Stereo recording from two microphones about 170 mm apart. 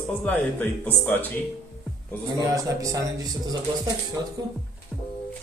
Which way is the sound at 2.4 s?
20° right (ahead or behind).